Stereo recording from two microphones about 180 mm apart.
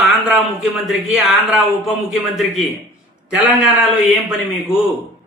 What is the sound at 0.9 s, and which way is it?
A man's voice, centre (ahead or behind).